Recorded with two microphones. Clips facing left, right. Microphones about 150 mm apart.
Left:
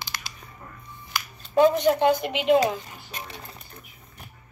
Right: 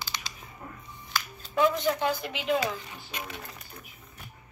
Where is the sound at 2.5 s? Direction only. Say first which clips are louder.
Left 8 dB; 40° left (ahead or behind).